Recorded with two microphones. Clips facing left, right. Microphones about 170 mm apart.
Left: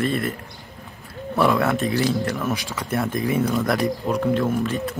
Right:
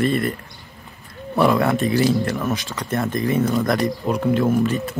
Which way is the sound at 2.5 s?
10° left (ahead or behind).